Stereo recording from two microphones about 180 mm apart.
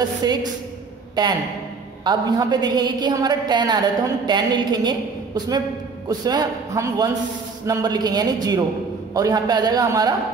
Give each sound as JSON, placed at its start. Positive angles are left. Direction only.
{"t": 0.2, "sound": "a woman's voice", "side_deg": -20}